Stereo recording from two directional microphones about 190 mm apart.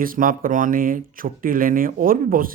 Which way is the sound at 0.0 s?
45° right (ahead or behind).